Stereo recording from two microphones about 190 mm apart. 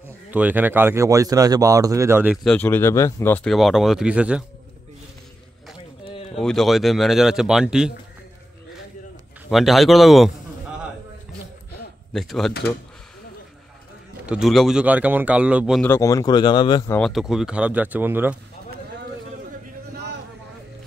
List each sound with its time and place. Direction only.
0.3 s speech: 10° right (ahead or behind)
2.4 s speech: 10° left (ahead or behind); by 4.5 s 5° right (ahead or behind)
6.3 s speech: centre (ahead or behind)
9.5 s speech: centre (ahead or behind)
12.1 s speech: centre (ahead or behind)
14.2 s speech: 5° right (ahead or behind)
15.8 s speech: 15° left (ahead or behind)
16.9 s speech: centre (ahead or behind)
19.9 s a sound: 60° right (ahead or behind)